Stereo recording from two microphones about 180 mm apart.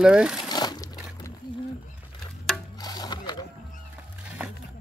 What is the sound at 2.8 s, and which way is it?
Wood, 20° left (ahead or behind).